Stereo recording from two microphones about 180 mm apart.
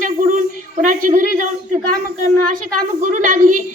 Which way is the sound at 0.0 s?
45° right (ahead or behind).